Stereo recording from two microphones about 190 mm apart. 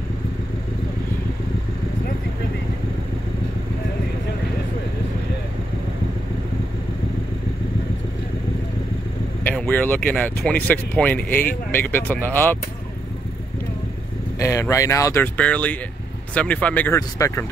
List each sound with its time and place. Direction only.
9.4 s speech: 10° left (ahead or behind)
14.4 s speech: 15° left (ahead or behind)